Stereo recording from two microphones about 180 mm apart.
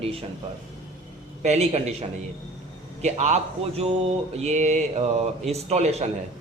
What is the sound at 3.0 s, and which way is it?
Speech, 40° right (ahead or behind).